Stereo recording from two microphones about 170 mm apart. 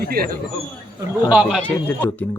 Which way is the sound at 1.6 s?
10° left (ahead or behind).